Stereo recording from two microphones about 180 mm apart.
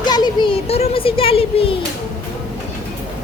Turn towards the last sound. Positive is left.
turn(degrees=30)  # may be behind; listen again after turning